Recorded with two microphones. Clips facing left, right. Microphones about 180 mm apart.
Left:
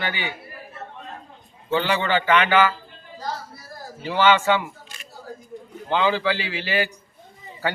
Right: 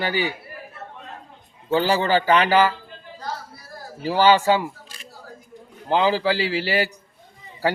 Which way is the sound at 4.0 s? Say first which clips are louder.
Right 2 dB; 35° right (ahead or behind).